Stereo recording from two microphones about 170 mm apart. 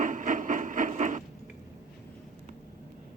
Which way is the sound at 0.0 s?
50° right (ahead or behind).